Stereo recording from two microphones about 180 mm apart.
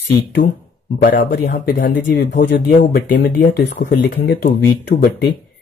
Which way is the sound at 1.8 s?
75° left (ahead or behind).